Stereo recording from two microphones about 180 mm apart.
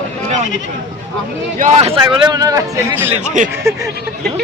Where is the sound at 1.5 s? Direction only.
40° right (ahead or behind).